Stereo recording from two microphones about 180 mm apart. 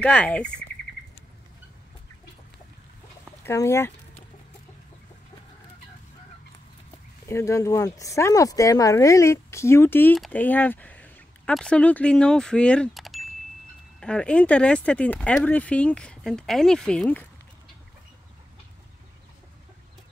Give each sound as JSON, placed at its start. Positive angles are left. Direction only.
{"t": 0.0, "sound": "speech", "side_deg": 5}
{"t": 3.4, "sound": "speech", "side_deg": 15}
{"t": 7.2, "sound": "speech", "side_deg": 15}